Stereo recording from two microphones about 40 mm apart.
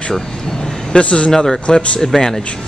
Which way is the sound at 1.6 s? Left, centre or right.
Left.